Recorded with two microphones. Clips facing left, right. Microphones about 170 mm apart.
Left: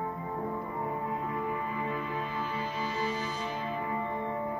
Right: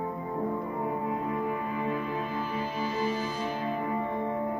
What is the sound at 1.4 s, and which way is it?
Music, 10° right (ahead or behind).